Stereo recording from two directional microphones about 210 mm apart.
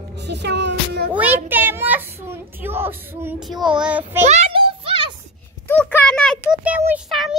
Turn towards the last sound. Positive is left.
turn(degrees=-5)  # may be behind; listen again after turning